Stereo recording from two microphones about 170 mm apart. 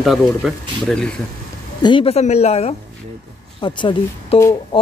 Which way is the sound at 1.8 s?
30° left (ahead or behind).